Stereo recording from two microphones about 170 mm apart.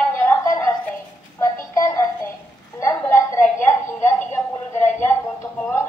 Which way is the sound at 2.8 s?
15° left (ahead or behind).